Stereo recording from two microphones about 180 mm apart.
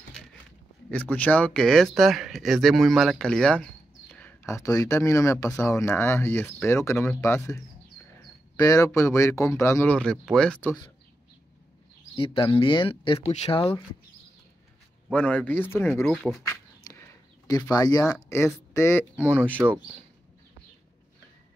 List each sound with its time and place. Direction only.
0.8 s speech: 10° left (ahead or behind)
12.2 s speech: 30° left (ahead or behind)
15.0 s speech: 10° left (ahead or behind)
16.9 s chop: 20° left (ahead or behind)
17.5 s speech: 20° left (ahead or behind)
19.6 s speech: 10° right (ahead or behind)